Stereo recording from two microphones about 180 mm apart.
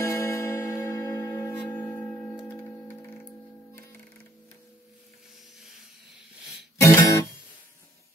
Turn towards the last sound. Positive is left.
turn(degrees=15)  # may be behind; listen again after turning